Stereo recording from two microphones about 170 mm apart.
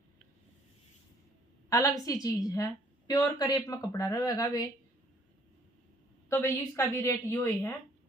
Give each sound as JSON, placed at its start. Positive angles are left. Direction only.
{"t": 1.7, "sound": "a woman's voice", "side_deg": 20}
{"t": 6.2, "sound": "a woman's voice", "side_deg": 15}